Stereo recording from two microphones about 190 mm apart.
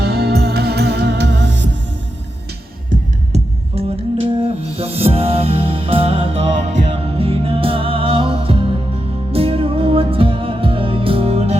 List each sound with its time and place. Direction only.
0.0 s music: 60° right (ahead or behind)
2.9 s music: 45° right (ahead or behind)
3.3 s music: 30° right (ahead or behind)